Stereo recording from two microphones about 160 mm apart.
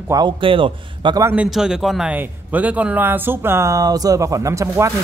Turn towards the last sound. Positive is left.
turn(degrees=-20)  # may be behind; listen again after turning